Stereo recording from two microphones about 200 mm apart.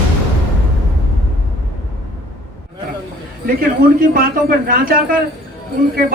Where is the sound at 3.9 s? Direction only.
45° right (ahead or behind).